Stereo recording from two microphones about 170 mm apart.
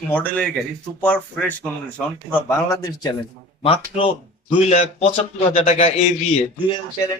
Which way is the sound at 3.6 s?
35° left (ahead or behind).